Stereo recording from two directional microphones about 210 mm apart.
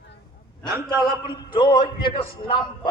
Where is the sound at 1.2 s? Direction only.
20° left (ahead or behind).